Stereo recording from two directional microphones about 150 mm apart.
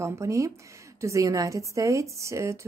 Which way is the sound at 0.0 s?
20° right (ahead or behind).